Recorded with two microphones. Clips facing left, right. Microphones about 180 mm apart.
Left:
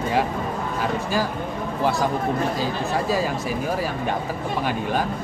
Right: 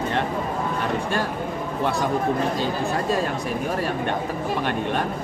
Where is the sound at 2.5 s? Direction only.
Centre (ahead or behind).